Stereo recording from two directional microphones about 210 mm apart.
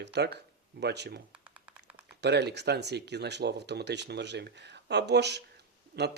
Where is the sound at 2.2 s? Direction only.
55° right (ahead or behind).